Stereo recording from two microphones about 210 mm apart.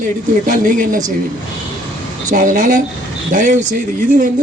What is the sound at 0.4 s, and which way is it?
Speech, 40° right (ahead or behind).